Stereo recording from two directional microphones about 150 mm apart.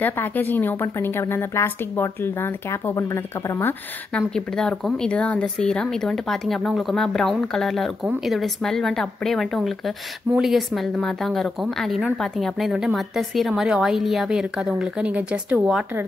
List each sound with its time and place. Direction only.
0.0 s a woman's voice: 15° left (ahead or behind)
4.6 s speech: 5° left (ahead or behind)